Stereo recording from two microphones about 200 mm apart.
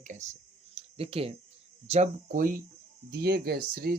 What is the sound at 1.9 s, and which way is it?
Speech, 40° right (ahead or behind).